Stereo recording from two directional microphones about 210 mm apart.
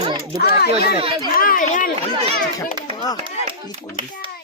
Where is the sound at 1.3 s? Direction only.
40° left (ahead or behind).